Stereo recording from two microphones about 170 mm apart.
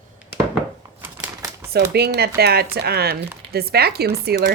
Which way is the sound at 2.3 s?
70° right (ahead or behind).